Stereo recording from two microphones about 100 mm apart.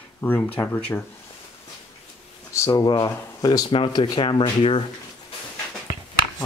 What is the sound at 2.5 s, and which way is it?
Speech, 30° left (ahead or behind).